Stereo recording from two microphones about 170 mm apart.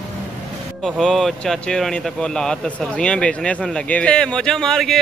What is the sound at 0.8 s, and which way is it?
A man's voice, centre (ahead or behind).